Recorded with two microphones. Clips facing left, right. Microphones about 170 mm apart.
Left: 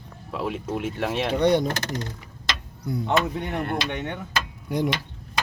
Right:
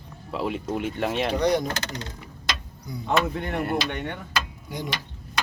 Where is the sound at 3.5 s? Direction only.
10° right (ahead or behind).